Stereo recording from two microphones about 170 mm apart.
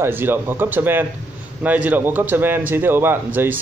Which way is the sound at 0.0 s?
10° right (ahead or behind).